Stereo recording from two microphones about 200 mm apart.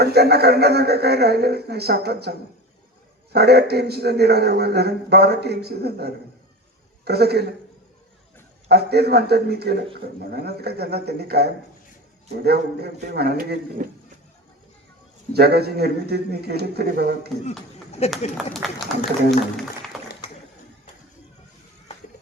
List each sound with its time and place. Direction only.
0.0 s a man's voice: 55° right (ahead or behind)
3.3 s a man's voice: 55° right (ahead or behind)
8.7 s a man's voice: 55° right (ahead or behind)
15.3 s a man's voice: 55° right (ahead or behind)
18.0 s speech: 30° left (ahead or behind)
18.3 s a man's voice: centre (ahead or behind)